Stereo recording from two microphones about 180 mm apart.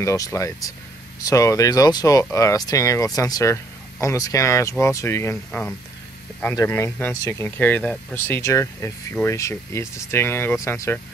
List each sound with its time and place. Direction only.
0.0 s speech: 15° left (ahead or behind)